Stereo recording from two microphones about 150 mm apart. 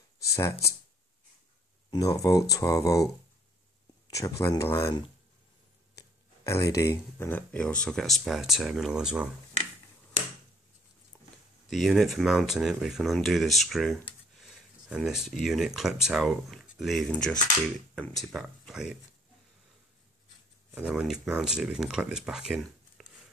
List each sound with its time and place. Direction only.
1.9 s speech: 25° left (ahead or behind)
4.2 s speech: 20° left (ahead or behind)
5.9 s speech: 20° left (ahead or behind); by 9.3 s 5° right (ahead or behind)
11.7 s speech: centre (ahead or behind)
20.7 s speech: 5° right (ahead or behind)